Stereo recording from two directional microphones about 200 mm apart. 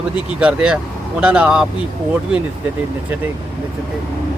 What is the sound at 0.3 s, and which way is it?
Speech, 5° right (ahead or behind).